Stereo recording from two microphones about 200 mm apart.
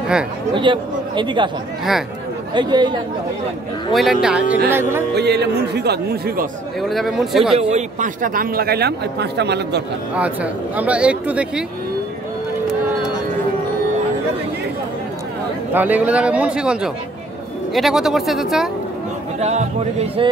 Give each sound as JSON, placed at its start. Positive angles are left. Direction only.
{"t": 0.6, "sound": "speech", "side_deg": -25}
{"t": 2.5, "sound": "speech", "side_deg": -20}
{"t": 3.9, "sound": "speech", "side_deg": 0}
{"t": 5.1, "sound": "speech", "side_deg": -55}
{"t": 6.8, "sound": "speech", "side_deg": 0}
{"t": 7.5, "sound": "a man's voice", "side_deg": -35}
{"t": 10.1, "sound": "speech", "side_deg": -5}
{"t": 15.7, "sound": "speech", "side_deg": -10}
{"t": 19.4, "sound": "music", "side_deg": -35}